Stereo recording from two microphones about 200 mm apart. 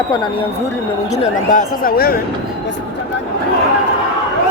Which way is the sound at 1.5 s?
45° left (ahead or behind).